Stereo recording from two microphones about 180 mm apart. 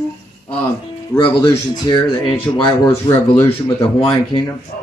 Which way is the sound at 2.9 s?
15° left (ahead or behind).